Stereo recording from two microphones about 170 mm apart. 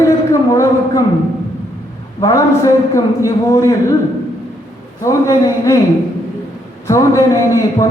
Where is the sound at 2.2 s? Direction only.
20° left (ahead or behind).